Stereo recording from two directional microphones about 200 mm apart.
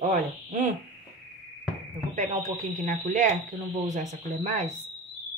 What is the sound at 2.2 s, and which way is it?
Speech, 35° right (ahead or behind).